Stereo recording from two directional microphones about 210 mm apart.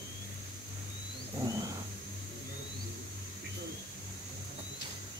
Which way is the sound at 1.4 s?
15° right (ahead or behind).